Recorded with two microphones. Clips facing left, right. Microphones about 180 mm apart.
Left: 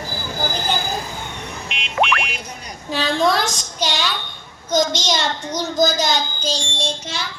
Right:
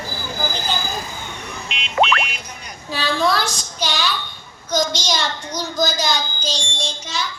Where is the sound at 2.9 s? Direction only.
20° left (ahead or behind).